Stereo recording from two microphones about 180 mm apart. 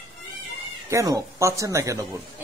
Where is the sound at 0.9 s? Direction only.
15° right (ahead or behind).